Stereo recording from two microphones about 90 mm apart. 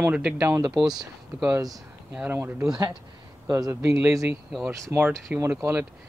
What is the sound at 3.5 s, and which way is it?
A man's voice, 35° right (ahead or behind).